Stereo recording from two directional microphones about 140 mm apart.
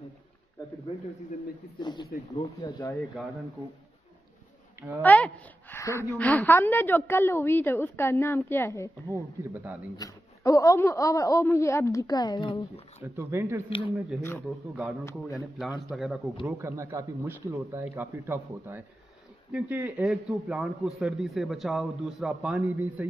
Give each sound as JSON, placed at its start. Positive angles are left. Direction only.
{"t": 0.9, "sound": "a man's voice", "side_deg": 45}
{"t": 1.8, "sound": "speech", "side_deg": 30}
{"t": 4.7, "sound": "a woman's voice", "side_deg": -15}
{"t": 5.0, "sound": "a woman's voice", "side_deg": 10}
{"t": 9.1, "sound": "speech", "side_deg": -15}
{"t": 9.9, "sound": "a man's voice", "side_deg": 25}
{"t": 13.0, "sound": "speech", "side_deg": -15}
{"t": 13.7, "sound": "speech", "side_deg": 40}
{"t": 14.8, "sound": "a man's voice", "side_deg": -10}
{"t": 16.4, "sound": "a man's voice", "side_deg": -20}